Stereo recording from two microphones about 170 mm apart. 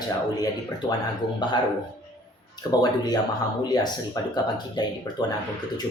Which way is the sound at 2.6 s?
25° left (ahead or behind).